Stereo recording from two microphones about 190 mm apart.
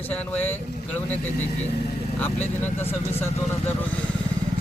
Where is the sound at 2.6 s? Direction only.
10° left (ahead or behind).